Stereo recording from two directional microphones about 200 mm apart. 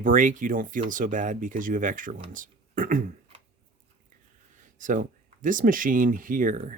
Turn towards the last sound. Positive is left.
turn(degrees=-40)  # may be behind; listen again after turning